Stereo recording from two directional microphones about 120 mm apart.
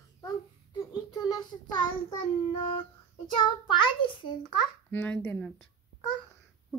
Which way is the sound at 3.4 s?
45° left (ahead or behind).